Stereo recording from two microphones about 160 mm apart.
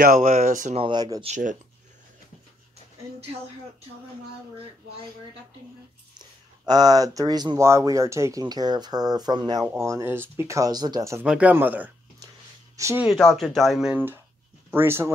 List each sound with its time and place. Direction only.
0.0 s speech: 55° right (ahead or behind)
0.7 s speech: 30° right (ahead or behind)
1.2 s speech: 50° right (ahead or behind)
6.1 s speech: 25° right (ahead or behind)
11.2 s speech: 10° right (ahead or behind)
13.0 s speech: centre (ahead or behind); by 15.1 s 15° right (ahead or behind)